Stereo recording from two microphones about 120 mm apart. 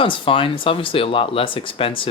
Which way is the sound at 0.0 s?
45° left (ahead or behind).